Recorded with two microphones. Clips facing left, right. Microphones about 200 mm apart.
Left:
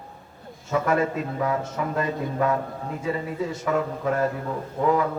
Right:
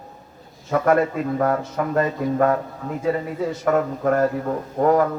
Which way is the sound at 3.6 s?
50° right (ahead or behind).